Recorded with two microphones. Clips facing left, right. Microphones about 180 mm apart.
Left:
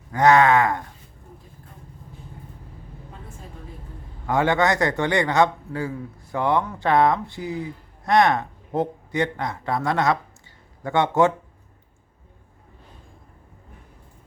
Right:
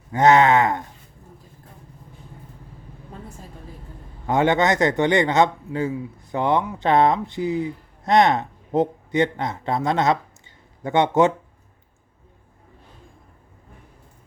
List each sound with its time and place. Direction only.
0.1 s speech: 25° right (ahead or behind)
4.3 s speech: 20° right (ahead or behind)